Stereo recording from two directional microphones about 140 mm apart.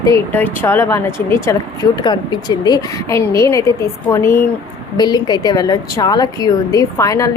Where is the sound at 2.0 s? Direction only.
30° left (ahead or behind).